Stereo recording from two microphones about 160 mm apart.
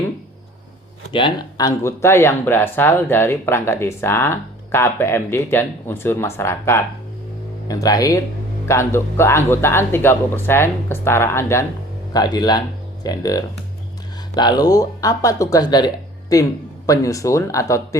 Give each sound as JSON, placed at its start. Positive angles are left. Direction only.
{"t": 1.1, "sound": "speech", "side_deg": 30}